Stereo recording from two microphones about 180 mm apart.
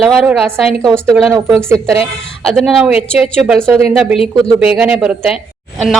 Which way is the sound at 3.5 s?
10° right (ahead or behind).